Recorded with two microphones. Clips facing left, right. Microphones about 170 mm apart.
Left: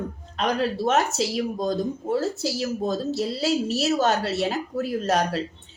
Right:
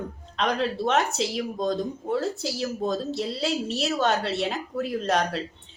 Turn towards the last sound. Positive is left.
turn(degrees=5)  # may be behind; listen again after turning